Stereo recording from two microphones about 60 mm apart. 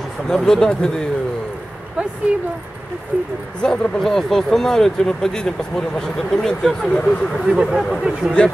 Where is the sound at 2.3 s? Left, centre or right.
Right.